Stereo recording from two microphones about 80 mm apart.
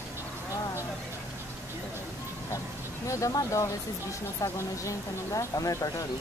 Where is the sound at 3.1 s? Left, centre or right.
Left.